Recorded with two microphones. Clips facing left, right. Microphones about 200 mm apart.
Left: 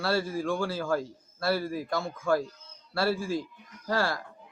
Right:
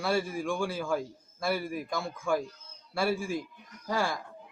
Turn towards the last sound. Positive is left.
turn(degrees=-15)  # may be behind; listen again after turning